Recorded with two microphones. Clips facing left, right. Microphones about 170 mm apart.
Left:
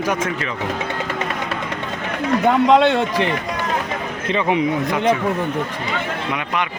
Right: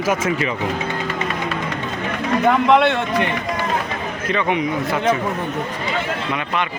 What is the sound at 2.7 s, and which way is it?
Speech, 25° left (ahead or behind).